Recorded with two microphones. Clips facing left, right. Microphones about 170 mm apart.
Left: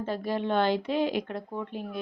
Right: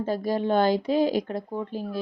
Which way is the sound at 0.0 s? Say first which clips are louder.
Right 4 dB; 40° right (ahead or behind).